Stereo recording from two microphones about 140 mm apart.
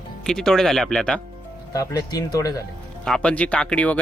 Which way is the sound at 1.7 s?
25° left (ahead or behind).